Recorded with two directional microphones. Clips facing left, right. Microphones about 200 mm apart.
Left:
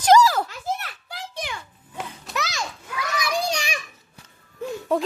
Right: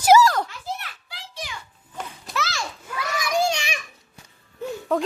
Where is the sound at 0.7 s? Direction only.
45° left (ahead or behind).